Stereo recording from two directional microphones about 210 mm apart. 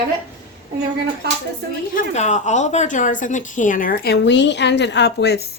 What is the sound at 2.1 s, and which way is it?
Speech, 35° left (ahead or behind).